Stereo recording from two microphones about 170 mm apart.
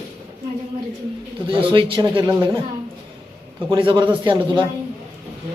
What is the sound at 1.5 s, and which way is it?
A man's voice, 30° right (ahead or behind).